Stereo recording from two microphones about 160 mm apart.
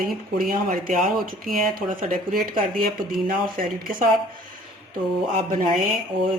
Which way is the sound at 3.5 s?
60° right (ahead or behind).